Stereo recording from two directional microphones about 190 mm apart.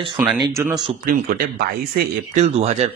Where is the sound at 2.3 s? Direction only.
35° right (ahead or behind).